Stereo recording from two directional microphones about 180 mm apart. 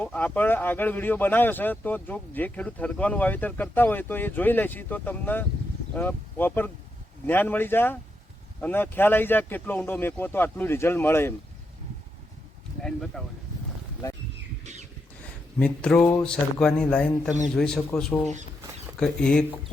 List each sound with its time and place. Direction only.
0.0 s speech: 10° left (ahead or behind)
12.8 s speech: 5° left (ahead or behind)
14.6 s a sound: 40° right (ahead or behind)
15.5 s speech: 5° left (ahead or behind)